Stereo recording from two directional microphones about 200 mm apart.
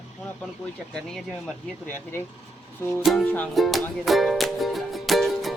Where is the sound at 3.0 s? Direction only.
5° left (ahead or behind).